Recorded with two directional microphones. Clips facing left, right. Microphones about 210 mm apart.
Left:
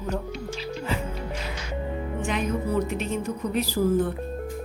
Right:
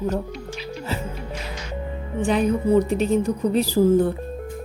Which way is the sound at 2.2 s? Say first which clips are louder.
Right 8 dB; 35° right (ahead or behind).